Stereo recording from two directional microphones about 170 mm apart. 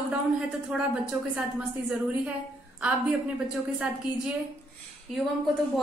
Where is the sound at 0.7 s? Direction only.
5° right (ahead or behind).